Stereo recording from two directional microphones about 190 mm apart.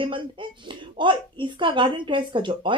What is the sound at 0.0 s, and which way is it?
Speech, 25° right (ahead or behind).